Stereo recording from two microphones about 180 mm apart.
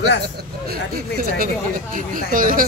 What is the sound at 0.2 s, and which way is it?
Speech, 55° right (ahead or behind).